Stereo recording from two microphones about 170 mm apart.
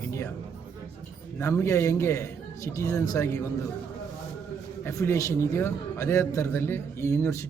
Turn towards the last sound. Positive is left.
turn(degrees=15)  # may be behind; listen again after turning